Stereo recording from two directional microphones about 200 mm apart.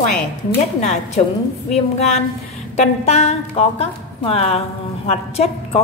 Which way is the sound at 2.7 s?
30° left (ahead or behind).